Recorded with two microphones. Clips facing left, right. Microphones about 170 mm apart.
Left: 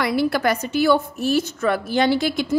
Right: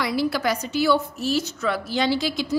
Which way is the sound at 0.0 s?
55° left (ahead or behind).